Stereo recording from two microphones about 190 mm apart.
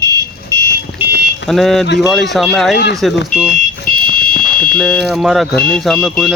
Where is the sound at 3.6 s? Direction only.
50° left (ahead or behind).